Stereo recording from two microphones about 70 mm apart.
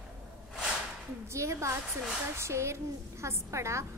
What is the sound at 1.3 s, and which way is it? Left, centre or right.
A woman's voice, right.